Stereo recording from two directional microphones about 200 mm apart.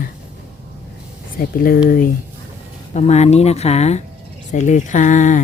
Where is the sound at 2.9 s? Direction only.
35° left (ahead or behind).